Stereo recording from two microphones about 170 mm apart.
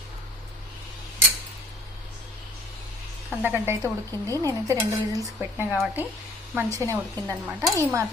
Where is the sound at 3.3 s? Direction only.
10° right (ahead or behind).